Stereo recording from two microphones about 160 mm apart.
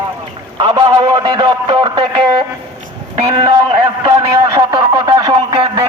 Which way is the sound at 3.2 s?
35° right (ahead or behind).